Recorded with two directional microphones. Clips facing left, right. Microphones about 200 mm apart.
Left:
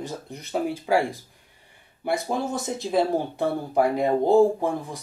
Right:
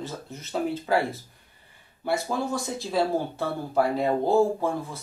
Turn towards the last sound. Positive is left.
turn(degrees=15)  # may be behind; listen again after turning